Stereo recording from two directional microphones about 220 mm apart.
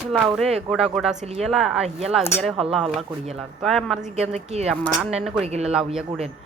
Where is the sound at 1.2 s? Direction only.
30° right (ahead or behind).